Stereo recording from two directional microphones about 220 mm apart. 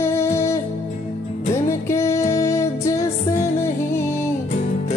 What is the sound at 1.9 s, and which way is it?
Music, 15° left (ahead or behind).